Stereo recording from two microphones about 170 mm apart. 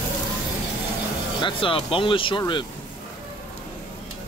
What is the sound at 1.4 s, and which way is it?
Speech, 30° left (ahead or behind).